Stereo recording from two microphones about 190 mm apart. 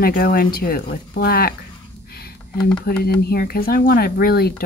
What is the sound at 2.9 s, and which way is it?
A woman's voice, 55° left (ahead or behind).